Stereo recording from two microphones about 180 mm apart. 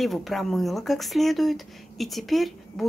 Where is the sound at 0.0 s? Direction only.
Centre (ahead or behind).